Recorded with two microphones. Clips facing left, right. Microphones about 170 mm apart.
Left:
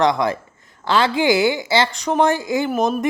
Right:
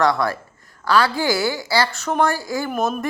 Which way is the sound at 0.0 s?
20° left (ahead or behind).